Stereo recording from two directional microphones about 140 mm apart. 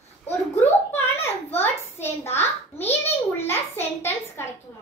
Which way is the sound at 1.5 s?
15° left (ahead or behind).